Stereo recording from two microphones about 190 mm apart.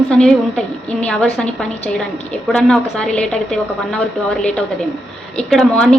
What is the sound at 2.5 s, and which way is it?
A woman's voice, 5° left (ahead or behind).